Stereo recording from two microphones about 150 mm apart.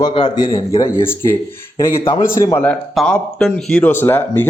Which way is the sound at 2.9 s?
Centre (ahead or behind).